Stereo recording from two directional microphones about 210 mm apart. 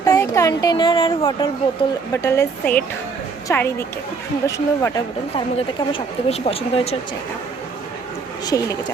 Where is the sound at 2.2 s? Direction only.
10° left (ahead or behind).